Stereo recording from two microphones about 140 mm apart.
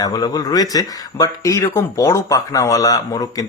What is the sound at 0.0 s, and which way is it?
Speech, 25° left (ahead or behind).